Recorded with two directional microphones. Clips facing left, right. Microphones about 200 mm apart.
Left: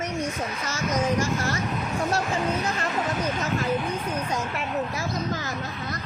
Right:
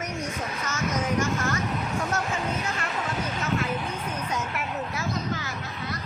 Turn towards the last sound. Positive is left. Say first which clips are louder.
# left 1 dB
turn(degrees=40)  # may be behind; listen again after turning